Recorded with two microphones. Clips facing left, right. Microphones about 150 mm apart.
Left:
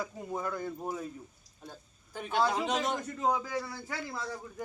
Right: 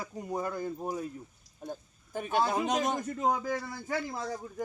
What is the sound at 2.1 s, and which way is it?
A man's voice, 45° right (ahead or behind).